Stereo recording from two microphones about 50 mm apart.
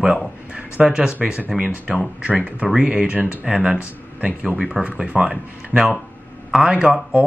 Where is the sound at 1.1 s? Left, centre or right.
Right.